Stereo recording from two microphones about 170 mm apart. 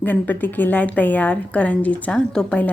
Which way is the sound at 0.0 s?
10° left (ahead or behind).